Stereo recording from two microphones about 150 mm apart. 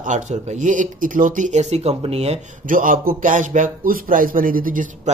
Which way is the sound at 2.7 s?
65° right (ahead or behind).